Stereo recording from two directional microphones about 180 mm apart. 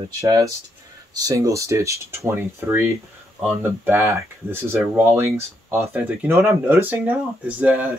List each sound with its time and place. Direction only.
0.2 s speech: 20° right (ahead or behind)